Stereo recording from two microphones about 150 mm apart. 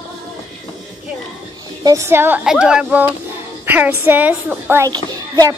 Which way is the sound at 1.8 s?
20° right (ahead or behind).